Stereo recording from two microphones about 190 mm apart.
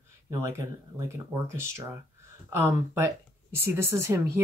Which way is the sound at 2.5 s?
15° right (ahead or behind).